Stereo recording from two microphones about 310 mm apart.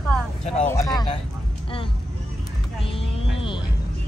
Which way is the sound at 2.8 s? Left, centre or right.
Centre.